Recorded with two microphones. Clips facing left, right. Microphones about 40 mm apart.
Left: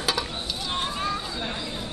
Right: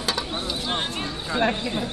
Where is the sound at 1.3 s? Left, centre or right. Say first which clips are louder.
Right 8 dB; right.